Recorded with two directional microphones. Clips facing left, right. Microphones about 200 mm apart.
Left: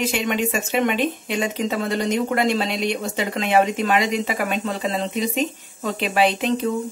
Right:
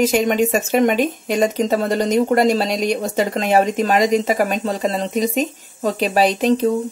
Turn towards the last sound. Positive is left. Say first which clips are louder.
# right 4 dB
turn(degrees=-40)  # may be behind; listen again after turning